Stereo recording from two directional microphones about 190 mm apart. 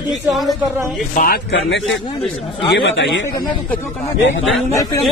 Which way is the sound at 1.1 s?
50° left (ahead or behind).